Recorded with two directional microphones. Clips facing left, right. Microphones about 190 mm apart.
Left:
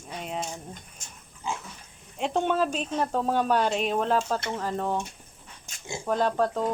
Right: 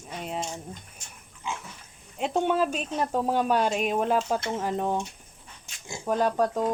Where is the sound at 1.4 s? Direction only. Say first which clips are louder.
Left 2 dB; 35° left (ahead or behind).